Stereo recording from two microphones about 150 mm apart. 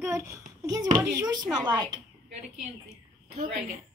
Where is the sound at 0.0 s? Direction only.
20° right (ahead or behind).